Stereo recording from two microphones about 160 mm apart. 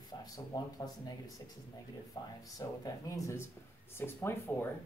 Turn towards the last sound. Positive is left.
turn(degrees=15)  # may be behind; listen again after turning